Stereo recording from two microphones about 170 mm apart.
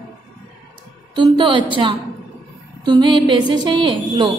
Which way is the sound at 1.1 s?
25° right (ahead or behind).